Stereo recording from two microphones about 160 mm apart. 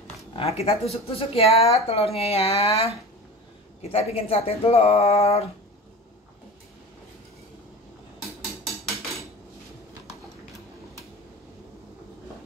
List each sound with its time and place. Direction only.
0.4 s speech: 40° left (ahead or behind)